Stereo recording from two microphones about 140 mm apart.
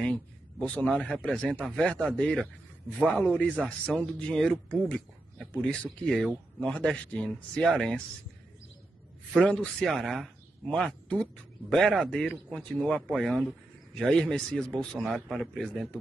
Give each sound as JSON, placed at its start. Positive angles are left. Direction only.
{"t": 0.0, "sound": "a man's voice", "side_deg": 5}
{"t": 9.4, "sound": "a man's voice", "side_deg": 5}